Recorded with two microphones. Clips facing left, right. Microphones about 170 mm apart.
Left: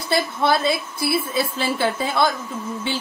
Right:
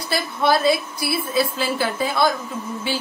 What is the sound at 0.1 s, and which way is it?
A woman's voice, 25° left (ahead or behind).